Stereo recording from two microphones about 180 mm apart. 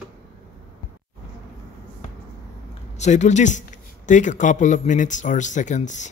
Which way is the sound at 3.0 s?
40° left (ahead or behind).